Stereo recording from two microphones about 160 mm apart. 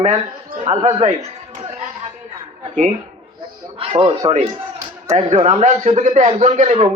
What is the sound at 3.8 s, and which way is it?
Speech, 35° right (ahead or behind).